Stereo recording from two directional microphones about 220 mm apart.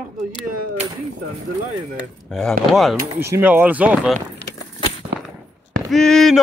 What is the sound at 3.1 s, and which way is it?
Speech, 10° right (ahead or behind).